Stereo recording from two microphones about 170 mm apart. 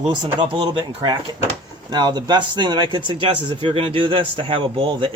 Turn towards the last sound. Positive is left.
turn(degrees=-30)  # may be behind; listen again after turning